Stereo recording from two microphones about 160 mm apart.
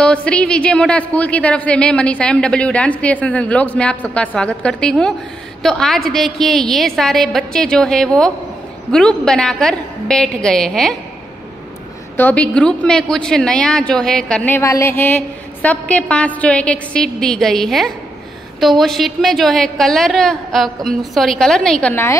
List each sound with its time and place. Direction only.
0.0 s a woman's voice: 5° left (ahead or behind)
12.2 s a woman's voice: 10° left (ahead or behind)